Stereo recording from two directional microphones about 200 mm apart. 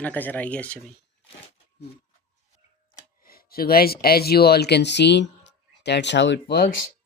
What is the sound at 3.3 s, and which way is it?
Speech, 50° left (ahead or behind).